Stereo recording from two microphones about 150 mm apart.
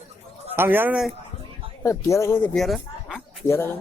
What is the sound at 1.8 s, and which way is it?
Speech, 20° left (ahead or behind).